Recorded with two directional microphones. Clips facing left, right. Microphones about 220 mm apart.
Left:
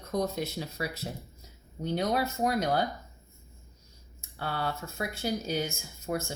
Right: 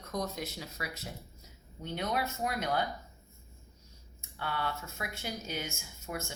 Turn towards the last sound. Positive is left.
turn(degrees=35)  # may be behind; listen again after turning